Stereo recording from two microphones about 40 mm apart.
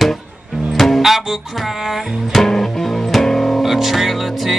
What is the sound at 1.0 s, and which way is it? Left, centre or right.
Music, centre.